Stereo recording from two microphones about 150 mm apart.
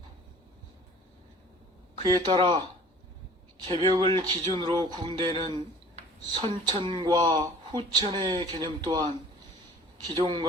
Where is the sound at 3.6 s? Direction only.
35° right (ahead or behind).